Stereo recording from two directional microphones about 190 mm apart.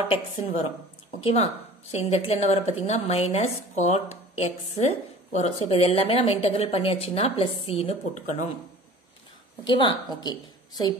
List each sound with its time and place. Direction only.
1.2 s a woman's voice: 35° left (ahead or behind)
9.7 s a woman's voice: 25° left (ahead or behind)